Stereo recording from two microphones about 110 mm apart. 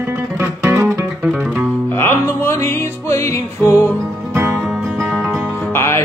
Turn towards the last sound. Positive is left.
turn(degrees=20)  # may be behind; listen again after turning